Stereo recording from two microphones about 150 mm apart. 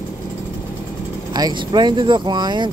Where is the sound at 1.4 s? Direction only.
30° right (ahead or behind).